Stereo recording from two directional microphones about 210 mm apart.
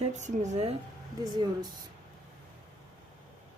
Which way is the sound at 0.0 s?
35° right (ahead or behind).